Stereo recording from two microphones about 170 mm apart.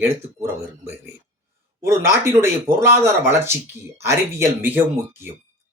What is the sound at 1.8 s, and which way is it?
Speech, 15° right (ahead or behind).